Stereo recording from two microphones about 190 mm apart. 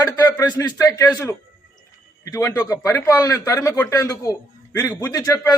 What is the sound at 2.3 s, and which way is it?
A man's voice, 15° left (ahead or behind).